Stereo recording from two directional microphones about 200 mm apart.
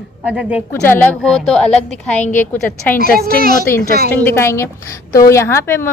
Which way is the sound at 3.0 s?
50° right (ahead or behind).